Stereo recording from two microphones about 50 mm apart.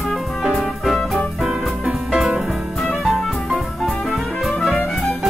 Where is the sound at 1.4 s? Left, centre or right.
Centre.